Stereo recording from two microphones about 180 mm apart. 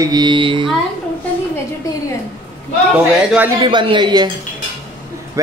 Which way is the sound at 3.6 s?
25° right (ahead or behind).